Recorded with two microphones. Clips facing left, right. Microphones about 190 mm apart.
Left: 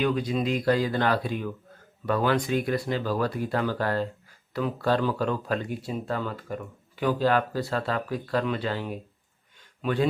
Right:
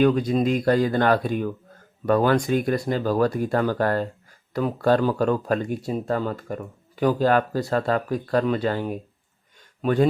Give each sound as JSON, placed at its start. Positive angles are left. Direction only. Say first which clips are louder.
{"t": 0.0, "sound": "speech", "louder": "right 6 dB", "side_deg": -45}